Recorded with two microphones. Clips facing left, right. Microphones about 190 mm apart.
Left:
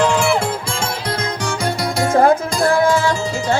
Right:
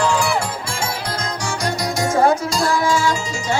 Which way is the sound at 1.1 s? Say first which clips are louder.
Left 3 dB; 55° left (ahead or behind).